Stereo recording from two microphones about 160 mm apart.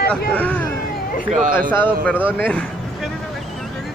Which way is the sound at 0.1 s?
5° left (ahead or behind).